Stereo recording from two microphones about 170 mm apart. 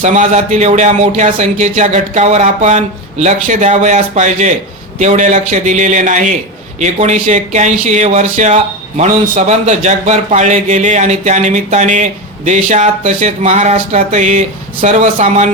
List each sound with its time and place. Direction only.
0.0 s speech: 45° right (ahead or behind)